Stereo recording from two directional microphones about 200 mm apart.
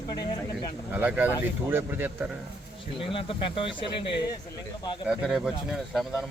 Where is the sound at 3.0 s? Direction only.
25° left (ahead or behind).